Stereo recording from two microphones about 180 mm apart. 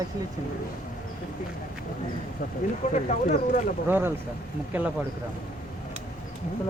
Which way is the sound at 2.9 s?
40° left (ahead or behind).